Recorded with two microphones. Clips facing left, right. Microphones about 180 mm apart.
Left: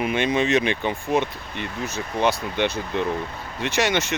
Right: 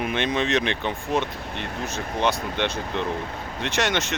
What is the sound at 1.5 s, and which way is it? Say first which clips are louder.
Speech: left 2 dB; 60° right (ahead or behind).